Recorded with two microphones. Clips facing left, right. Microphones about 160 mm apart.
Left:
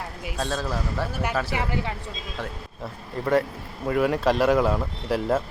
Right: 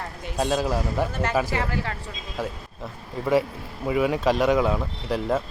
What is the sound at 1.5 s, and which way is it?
Speech, 15° left (ahead or behind).